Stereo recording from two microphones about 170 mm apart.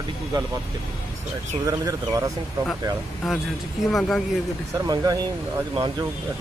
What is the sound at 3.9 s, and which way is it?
Speech, centre (ahead or behind).